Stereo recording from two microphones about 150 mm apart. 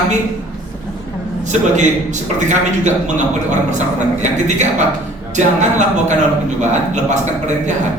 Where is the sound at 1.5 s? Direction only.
50° right (ahead or behind).